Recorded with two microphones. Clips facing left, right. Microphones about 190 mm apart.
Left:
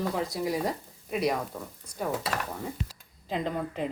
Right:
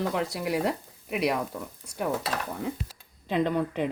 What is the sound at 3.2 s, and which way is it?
Speech, 70° right (ahead or behind).